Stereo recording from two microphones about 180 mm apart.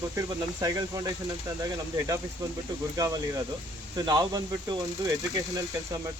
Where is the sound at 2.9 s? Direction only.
20° right (ahead or behind).